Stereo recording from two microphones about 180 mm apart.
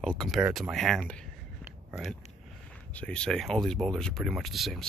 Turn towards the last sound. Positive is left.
turn(degrees=0)  # may be behind; listen again after turning